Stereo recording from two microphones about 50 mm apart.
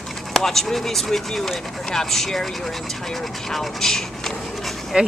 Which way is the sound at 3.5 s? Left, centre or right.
Centre.